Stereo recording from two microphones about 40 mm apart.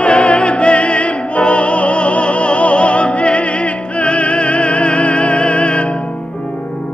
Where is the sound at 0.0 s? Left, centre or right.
Left.